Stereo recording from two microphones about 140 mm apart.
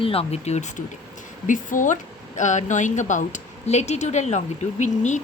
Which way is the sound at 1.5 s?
65° left (ahead or behind).